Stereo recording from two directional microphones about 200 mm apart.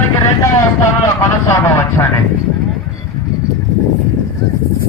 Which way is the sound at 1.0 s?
15° left (ahead or behind).